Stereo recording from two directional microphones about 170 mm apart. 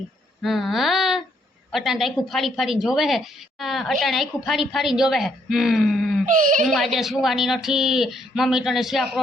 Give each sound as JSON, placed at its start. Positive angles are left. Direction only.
{"t": 0.4, "sound": "speech", "side_deg": 0}
{"t": 6.2, "sound": "speech", "side_deg": -50}
{"t": 6.7, "sound": "speech", "side_deg": 0}